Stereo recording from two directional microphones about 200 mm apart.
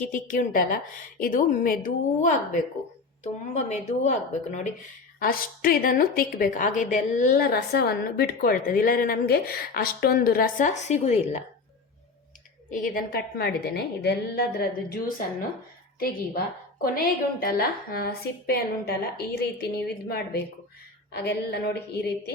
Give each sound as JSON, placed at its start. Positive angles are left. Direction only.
{"t": 0.1, "sound": "a woman's voice", "side_deg": 40}
{"t": 5.2, "sound": "a woman's voice", "side_deg": 45}
{"t": 12.7, "sound": "a woman's voice", "side_deg": 45}